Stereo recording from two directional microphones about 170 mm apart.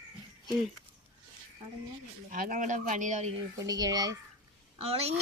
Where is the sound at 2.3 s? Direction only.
50° right (ahead or behind).